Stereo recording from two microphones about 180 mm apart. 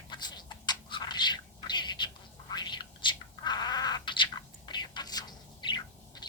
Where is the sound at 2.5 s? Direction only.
25° left (ahead or behind).